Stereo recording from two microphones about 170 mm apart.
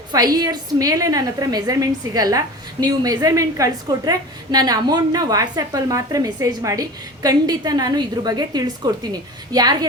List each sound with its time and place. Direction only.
0.3 s a woman's voice: 20° right (ahead or behind)